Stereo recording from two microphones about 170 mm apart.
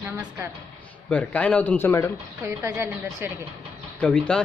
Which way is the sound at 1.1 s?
10° left (ahead or behind).